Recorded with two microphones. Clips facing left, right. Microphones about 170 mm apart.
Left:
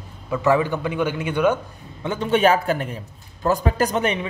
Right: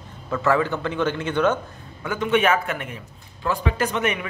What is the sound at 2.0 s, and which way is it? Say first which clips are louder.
A man's voice: left 2 dB; 30° left (ahead or behind).